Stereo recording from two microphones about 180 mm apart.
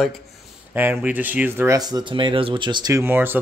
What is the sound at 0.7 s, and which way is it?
Speech, 10° right (ahead or behind).